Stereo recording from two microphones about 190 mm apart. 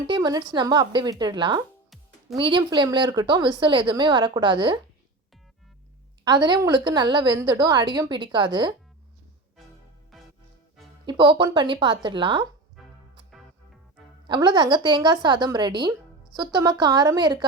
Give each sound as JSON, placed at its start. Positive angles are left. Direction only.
{"t": 0.1, "sound": "a woman's voice", "side_deg": -20}
{"t": 6.2, "sound": "a woman's voice", "side_deg": -20}
{"t": 11.0, "sound": "a woman's voice", "side_deg": -25}
{"t": 12.8, "sound": "music", "side_deg": 0}
{"t": 14.3, "sound": "a woman's voice", "side_deg": -25}